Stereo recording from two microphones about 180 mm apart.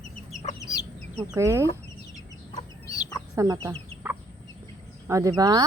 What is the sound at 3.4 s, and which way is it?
Speech, 15° right (ahead or behind).